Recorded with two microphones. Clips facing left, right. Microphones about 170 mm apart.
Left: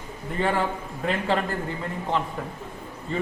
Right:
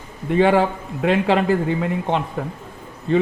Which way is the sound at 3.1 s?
70° right (ahead or behind).